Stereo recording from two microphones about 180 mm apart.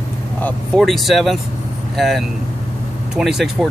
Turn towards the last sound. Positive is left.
turn(degrees=0)  # may be behind; listen again after turning